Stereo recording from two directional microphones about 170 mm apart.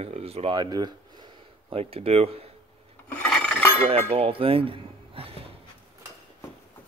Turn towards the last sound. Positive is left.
turn(degrees=-35)  # may be behind; listen again after turning